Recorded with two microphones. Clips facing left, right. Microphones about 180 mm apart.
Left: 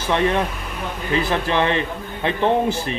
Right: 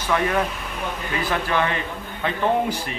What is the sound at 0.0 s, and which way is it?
Speech, 25° left (ahead or behind).